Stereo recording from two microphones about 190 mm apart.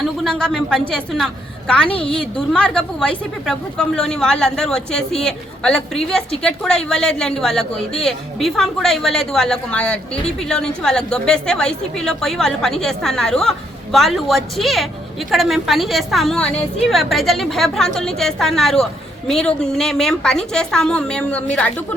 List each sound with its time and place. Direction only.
0.0 s a woman's voice: 5° left (ahead or behind)
1.9 s a woman's voice: 30° left (ahead or behind)
2.1 s a woman's voice: 5° left (ahead or behind)